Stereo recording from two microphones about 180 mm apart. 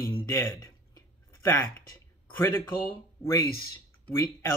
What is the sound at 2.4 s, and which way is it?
A man's voice, 10° left (ahead or behind).